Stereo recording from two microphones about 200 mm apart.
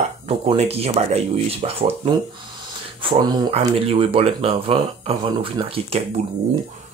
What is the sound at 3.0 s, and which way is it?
Speech, 30° right (ahead or behind).